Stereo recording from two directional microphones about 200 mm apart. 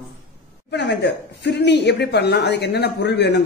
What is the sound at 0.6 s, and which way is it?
Speech, 60° left (ahead or behind).